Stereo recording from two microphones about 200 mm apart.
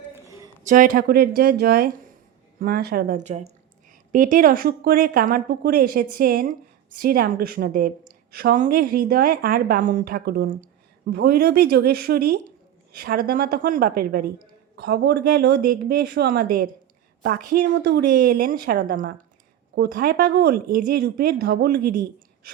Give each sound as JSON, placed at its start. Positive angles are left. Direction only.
{"t": 0.6, "sound": "a woman's voice", "side_deg": -45}